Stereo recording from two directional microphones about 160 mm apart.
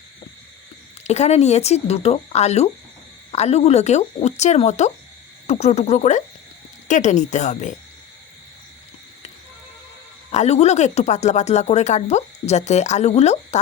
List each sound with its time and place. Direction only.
1.0 s speech: 45° left (ahead or behind)
10.3 s speech: 45° left (ahead or behind)